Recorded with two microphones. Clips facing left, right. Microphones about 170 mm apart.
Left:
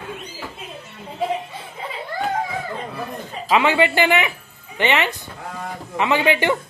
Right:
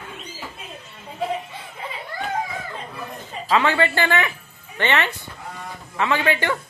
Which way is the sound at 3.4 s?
15° left (ahead or behind).